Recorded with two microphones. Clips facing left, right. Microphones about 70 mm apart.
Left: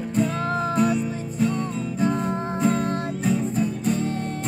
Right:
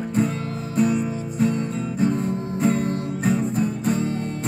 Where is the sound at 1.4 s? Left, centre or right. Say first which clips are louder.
Right 1 dB; centre.